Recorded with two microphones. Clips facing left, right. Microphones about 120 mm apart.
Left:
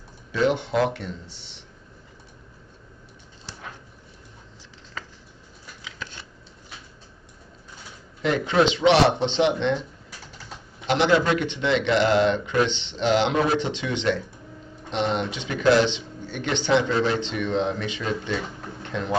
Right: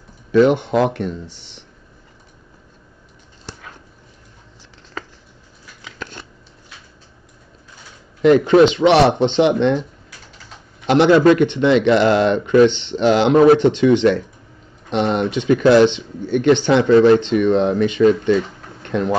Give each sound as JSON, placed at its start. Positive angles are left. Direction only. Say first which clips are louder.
{"t": 0.3, "sound": "speech", "louder": "right 9 dB", "side_deg": -55}
{"t": 5.9, "sound": "scissors", "louder": "right 6 dB", "side_deg": -55}
{"t": 8.2, "sound": "speech", "louder": "right 10 dB", "side_deg": -55}
{"t": 10.9, "sound": "speech", "louder": "right 9 dB", "side_deg": -55}